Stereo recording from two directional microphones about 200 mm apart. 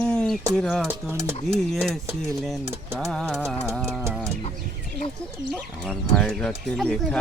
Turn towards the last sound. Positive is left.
turn(degrees=5)  # may be behind; listen again after turning